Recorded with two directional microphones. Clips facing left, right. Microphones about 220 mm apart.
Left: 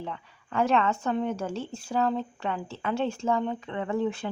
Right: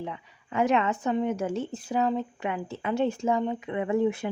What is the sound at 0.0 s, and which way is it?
Speech, 15° right (ahead or behind).